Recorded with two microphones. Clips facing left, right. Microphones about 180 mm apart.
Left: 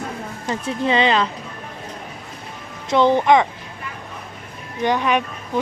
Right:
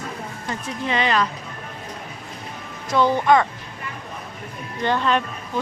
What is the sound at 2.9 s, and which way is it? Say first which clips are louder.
Speech: left 3 dB; 20° left (ahead or behind).